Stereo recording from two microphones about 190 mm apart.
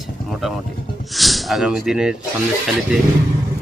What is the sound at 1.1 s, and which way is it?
Speech, centre (ahead or behind).